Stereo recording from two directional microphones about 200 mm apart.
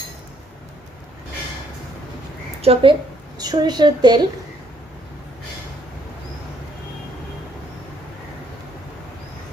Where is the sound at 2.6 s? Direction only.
30° right (ahead or behind).